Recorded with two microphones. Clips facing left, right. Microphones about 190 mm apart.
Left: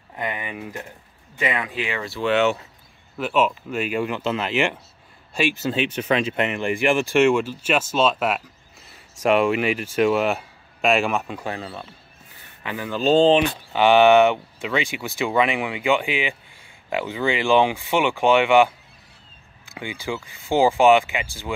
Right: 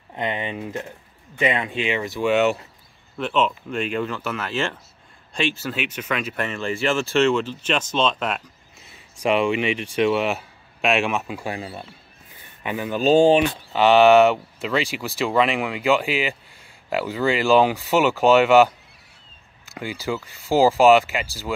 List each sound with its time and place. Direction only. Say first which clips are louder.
0.1 s speech: right 3 dB; 25° right (ahead or behind)
3.2 s speech: left 1 dB; 5° left (ahead or behind)
4.2 s speech: left 4 dB; 20° left (ahead or behind)
5.6 s speech: left 5 dB; 25° left (ahead or behind); by 13.4 s 15° right (ahead or behind)
13.7 s speech: right 1 dB; centre (ahead or behind)
19.7 s speech: right 2 dB; 5° right (ahead or behind)